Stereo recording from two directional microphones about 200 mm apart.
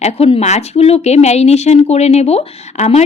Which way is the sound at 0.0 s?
30° left (ahead or behind).